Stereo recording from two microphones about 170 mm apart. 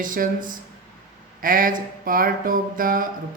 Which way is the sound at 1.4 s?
55° right (ahead or behind).